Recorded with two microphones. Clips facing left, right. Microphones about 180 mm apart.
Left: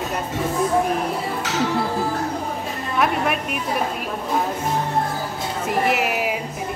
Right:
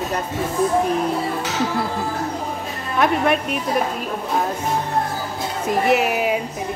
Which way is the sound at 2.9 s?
5° left (ahead or behind).